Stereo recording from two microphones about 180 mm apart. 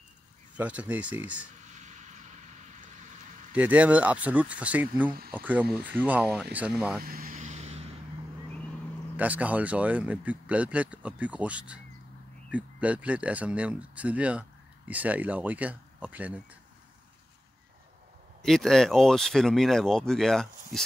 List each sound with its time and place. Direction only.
0.6 s speech: 5° right (ahead or behind)
1.6 s vehicle: 40° right (ahead or behind)
3.5 s speech: 10° right (ahead or behind)
7.0 s speech: 55° right (ahead or behind)
7.3 s vehicle: 40° right (ahead or behind)
9.1 s speech: 10° right (ahead or behind)
18.4 s speech: centre (ahead or behind)